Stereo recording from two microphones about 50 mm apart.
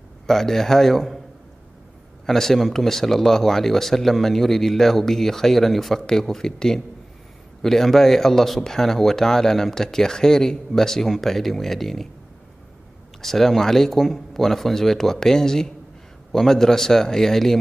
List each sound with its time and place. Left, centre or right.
0.3 s speech: centre
2.2 s speech: centre
13.2 s speech: centre